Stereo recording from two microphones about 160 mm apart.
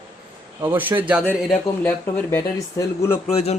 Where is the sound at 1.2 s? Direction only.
10° left (ahead or behind).